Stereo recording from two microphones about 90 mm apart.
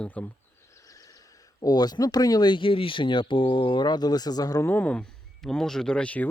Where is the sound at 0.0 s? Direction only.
15° left (ahead or behind).